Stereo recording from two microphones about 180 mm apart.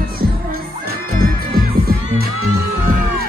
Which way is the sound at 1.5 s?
55° right (ahead or behind).